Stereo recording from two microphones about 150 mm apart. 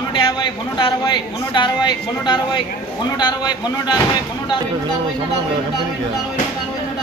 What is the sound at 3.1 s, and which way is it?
Speech, 30° left (ahead or behind).